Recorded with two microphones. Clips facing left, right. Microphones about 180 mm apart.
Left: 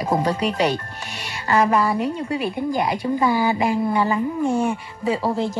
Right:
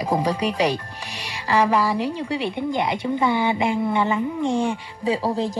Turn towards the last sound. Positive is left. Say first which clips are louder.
# left 1 dB
turn(degrees=-35)  # may be behind; listen again after turning